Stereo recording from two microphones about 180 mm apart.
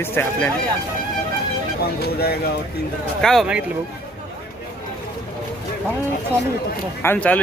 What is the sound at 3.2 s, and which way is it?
Speech, centre (ahead or behind).